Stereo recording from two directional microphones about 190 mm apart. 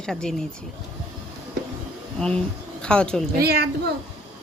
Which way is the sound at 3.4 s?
55° right (ahead or behind).